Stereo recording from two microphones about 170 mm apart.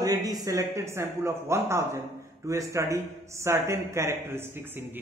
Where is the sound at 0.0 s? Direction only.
20° right (ahead or behind).